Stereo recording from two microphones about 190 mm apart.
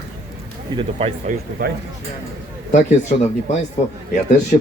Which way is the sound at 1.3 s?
40° right (ahead or behind).